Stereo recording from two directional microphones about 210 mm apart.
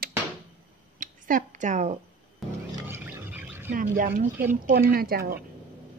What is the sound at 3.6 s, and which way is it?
A woman's voice, 40° right (ahead or behind).